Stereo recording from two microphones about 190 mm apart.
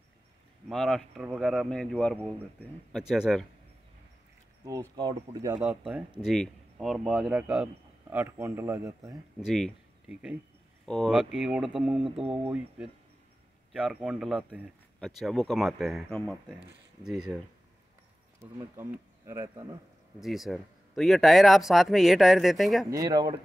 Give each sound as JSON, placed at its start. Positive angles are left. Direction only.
{"t": 0.7, "sound": "speech", "side_deg": 0}
{"t": 4.6, "sound": "speech", "side_deg": -20}
{"t": 5.6, "sound": "speech", "side_deg": -5}
{"t": 9.4, "sound": "speech", "side_deg": 0}
{"t": 12.0, "sound": "speech", "side_deg": -30}
{"t": 12.4, "sound": "speech", "side_deg": -5}
{"t": 18.8, "sound": "speech", "side_deg": -20}
{"t": 20.2, "sound": "speech", "side_deg": 0}
{"t": 22.8, "sound": "speech", "side_deg": -20}